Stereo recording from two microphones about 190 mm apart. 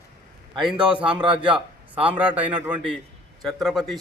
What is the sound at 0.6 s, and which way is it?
A man's voice, 5° right (ahead or behind).